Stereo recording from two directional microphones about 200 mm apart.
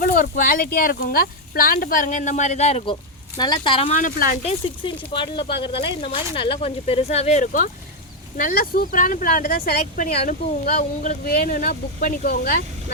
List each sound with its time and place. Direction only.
0.0 s speech: 45° left (ahead or behind)
5.1 s speech: 25° left (ahead or behind); by 12.5 s 45° left (ahead or behind)